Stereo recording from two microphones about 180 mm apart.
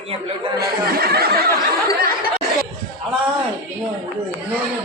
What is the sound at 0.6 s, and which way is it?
Speech, 60° right (ahead or behind).